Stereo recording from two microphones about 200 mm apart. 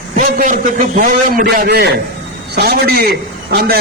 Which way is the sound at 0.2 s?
45° right (ahead or behind).